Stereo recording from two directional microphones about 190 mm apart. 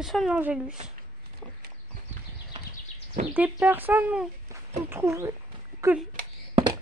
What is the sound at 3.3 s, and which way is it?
Speech, 10° right (ahead or behind).